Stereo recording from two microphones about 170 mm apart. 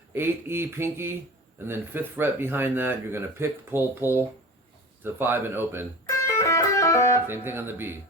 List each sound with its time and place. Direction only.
0.1 s speech: 15° right (ahead or behind)
6.2 s music: 15° left (ahead or behind)
7.3 s speech: 15° right (ahead or behind)